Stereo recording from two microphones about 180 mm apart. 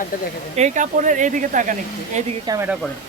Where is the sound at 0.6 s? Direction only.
40° right (ahead or behind).